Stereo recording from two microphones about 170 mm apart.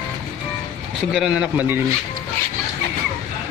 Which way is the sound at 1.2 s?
5° right (ahead or behind).